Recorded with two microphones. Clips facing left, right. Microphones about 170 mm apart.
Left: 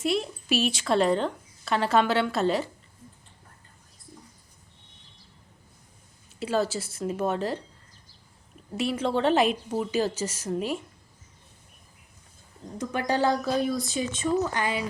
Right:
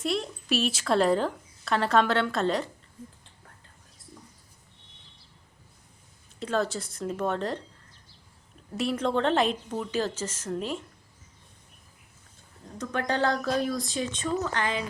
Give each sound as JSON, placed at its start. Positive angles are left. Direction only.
{"t": 0.0, "sound": "speech", "side_deg": 0}
{"t": 6.4, "sound": "speech", "side_deg": 5}
{"t": 8.7, "sound": "speech", "side_deg": 0}
{"t": 12.8, "sound": "speech", "side_deg": 10}